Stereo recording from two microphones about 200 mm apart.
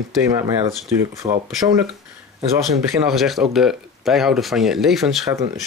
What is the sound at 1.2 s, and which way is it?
Speech, 30° right (ahead or behind).